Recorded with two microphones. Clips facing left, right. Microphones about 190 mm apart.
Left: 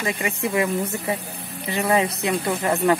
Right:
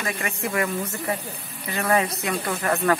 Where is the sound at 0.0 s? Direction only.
15° left (ahead or behind).